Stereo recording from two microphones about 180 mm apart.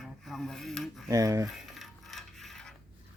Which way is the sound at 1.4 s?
Centre (ahead or behind).